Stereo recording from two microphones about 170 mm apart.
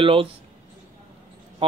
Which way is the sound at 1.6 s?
35° right (ahead or behind).